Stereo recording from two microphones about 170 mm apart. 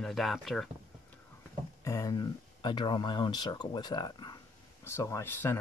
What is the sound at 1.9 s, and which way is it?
Speech, 20° left (ahead or behind).